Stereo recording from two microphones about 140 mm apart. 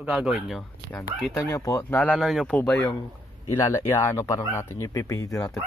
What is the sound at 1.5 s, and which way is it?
Speech, 20° left (ahead or behind).